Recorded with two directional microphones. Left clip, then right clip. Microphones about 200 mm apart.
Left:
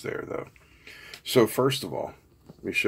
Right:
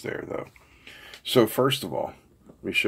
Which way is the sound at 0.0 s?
5° right (ahead or behind).